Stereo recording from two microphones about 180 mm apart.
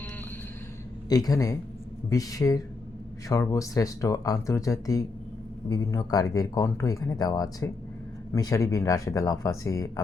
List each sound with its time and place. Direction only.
1.1 s speech: 20° left (ahead or behind)